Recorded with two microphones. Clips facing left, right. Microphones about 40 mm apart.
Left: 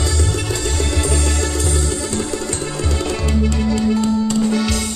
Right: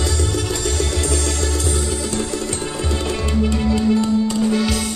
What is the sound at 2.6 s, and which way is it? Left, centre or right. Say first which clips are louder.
Music: left 1 dB; right.